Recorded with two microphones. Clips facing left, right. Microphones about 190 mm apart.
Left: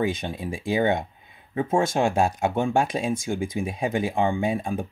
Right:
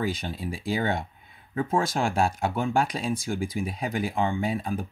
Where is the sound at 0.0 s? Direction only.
20° left (ahead or behind).